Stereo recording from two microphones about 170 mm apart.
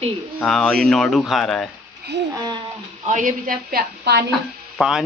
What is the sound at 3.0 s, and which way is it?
A woman's voice, 50° right (ahead or behind).